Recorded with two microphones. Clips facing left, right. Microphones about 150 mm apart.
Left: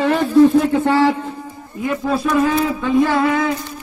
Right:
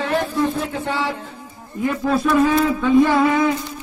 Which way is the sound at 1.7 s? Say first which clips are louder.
Even; 5° left (ahead or behind).